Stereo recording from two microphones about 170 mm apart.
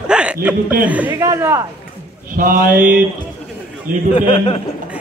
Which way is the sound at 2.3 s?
55° right (ahead or behind).